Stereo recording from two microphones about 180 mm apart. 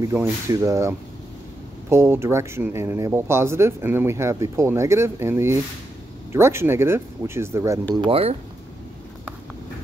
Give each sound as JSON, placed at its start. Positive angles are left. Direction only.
{"t": 0.0, "sound": "speech", "side_deg": -15}
{"t": 7.9, "sound": "speech", "side_deg": -30}